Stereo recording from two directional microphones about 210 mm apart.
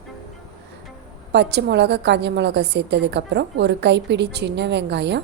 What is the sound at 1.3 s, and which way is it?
A woman's voice, 55° right (ahead or behind).